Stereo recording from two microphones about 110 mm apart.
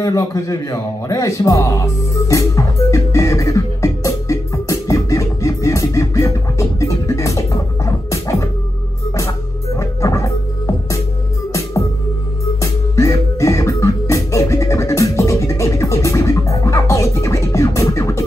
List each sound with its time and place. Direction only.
0.0 s music: 30° left (ahead or behind)
9.8 s music: 30° left (ahead or behind)
12.5 s music: 30° left (ahead or behind)